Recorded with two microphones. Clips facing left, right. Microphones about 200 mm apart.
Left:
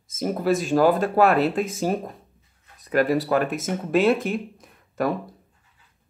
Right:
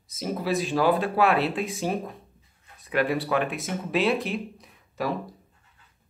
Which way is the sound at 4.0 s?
Centre (ahead or behind).